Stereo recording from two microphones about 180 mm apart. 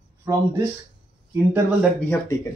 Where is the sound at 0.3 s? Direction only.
20° right (ahead or behind).